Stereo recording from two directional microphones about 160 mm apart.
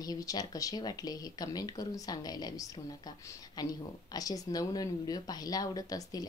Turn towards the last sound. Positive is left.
turn(degrees=25)  # may be behind; listen again after turning